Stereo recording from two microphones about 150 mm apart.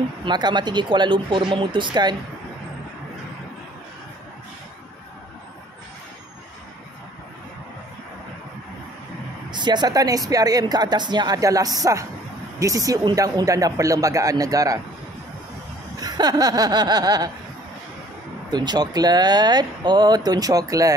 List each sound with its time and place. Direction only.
0.2 s speech: 30° right (ahead or behind)
9.5 s speech: 30° right (ahead or behind)
16.0 s speech: 25° right (ahead or behind)
18.5 s speech: 30° right (ahead or behind)